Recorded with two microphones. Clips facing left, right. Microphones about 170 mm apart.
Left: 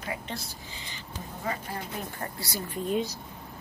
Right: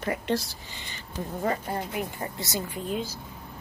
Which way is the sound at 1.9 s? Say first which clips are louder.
Right 4 dB; 20° right (ahead or behind).